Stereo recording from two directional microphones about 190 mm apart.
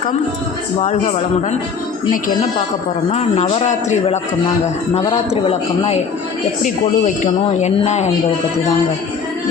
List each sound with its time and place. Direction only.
0.8 s speech: 40° left (ahead or behind)